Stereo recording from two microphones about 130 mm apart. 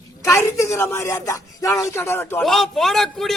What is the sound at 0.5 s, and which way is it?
Speech, 20° left (ahead or behind).